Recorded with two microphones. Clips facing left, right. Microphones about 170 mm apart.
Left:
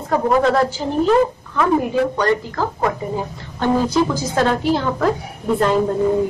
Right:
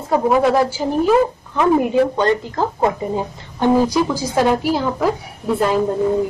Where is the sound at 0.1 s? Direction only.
10° right (ahead or behind).